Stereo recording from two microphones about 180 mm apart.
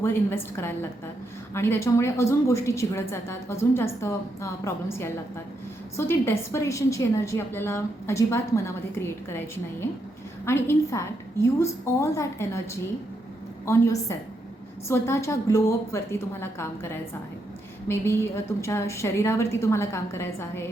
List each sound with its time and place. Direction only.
0.0 s a woman's voice: 10° left (ahead or behind)
10.4 s a woman's voice: 15° left (ahead or behind)